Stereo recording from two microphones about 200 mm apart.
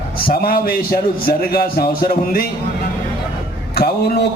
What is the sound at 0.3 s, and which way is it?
A man's voice, 45° left (ahead or behind).